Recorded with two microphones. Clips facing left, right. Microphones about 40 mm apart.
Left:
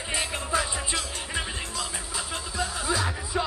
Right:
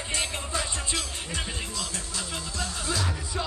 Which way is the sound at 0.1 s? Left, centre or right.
Centre.